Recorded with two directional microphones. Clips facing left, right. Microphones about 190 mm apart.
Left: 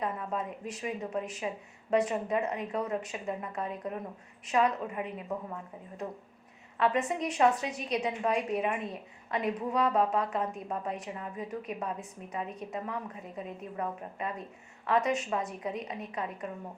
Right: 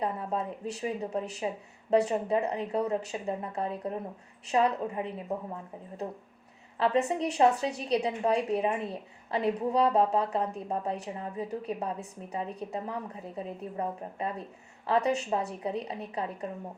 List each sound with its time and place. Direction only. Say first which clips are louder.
0.0 s a woman's voice: right 2 dB; 35° right (ahead or behind)
6.7 s a woman's voice: right 2 dB; 30° right (ahead or behind)